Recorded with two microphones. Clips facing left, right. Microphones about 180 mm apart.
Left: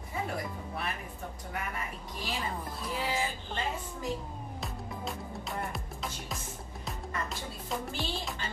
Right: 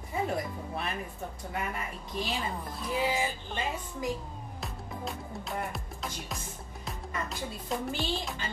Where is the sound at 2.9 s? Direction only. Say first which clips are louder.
Right 4 dB; 15° right (ahead or behind).